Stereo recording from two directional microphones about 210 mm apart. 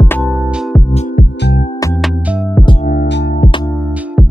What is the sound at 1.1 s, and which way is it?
Music, 50° left (ahead or behind).